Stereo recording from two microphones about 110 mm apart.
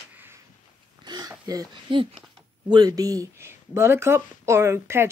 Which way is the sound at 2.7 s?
35° right (ahead or behind).